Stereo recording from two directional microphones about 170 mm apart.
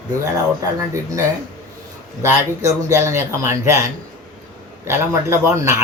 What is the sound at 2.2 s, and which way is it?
Speech, 15° right (ahead or behind).